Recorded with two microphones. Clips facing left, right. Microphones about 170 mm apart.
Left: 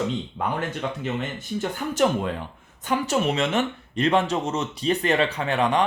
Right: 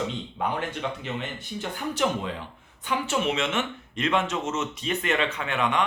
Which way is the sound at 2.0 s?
50° left (ahead or behind).